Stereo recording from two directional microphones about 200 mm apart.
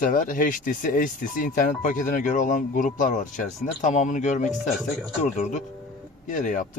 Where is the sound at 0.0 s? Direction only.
40° left (ahead or behind).